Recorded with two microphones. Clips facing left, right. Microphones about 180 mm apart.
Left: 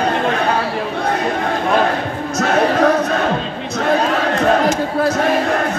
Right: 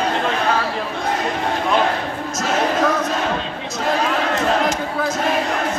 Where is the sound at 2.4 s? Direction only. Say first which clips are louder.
Left 5 dB; 60° left (ahead or behind).